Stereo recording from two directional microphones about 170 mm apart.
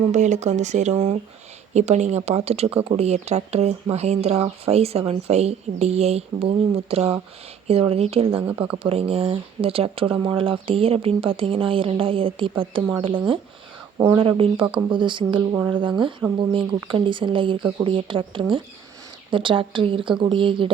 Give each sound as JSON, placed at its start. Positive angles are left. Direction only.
{"t": 0.1, "sound": "speech", "side_deg": -45}
{"t": 8.4, "sound": "speech", "side_deg": -10}
{"t": 8.7, "sound": "speech", "side_deg": -35}
{"t": 15.4, "sound": "speech", "side_deg": -10}
{"t": 15.7, "sound": "speech", "side_deg": -30}